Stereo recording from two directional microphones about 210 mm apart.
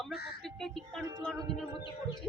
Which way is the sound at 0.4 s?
Centre (ahead or behind).